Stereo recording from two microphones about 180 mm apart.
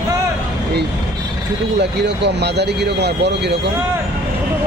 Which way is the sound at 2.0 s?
70° right (ahead or behind).